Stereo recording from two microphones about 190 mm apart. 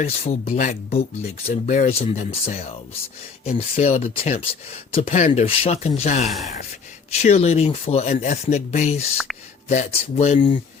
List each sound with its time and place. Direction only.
0.0 s speech: 35° left (ahead or behind)